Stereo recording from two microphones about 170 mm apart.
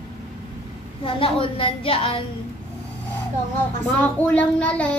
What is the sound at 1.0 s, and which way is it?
A woman's voice, 30° left (ahead or behind).